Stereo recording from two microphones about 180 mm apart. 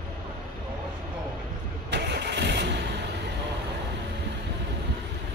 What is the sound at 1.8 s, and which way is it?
Vehicle, 70° right (ahead or behind).